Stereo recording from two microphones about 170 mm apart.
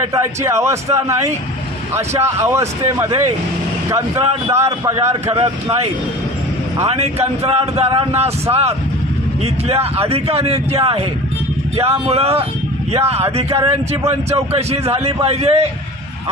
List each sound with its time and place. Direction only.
0.1 s speech: 15° right (ahead or behind)
5.3 s speech: 35° right (ahead or behind)
14.5 s speech: 35° right (ahead or behind)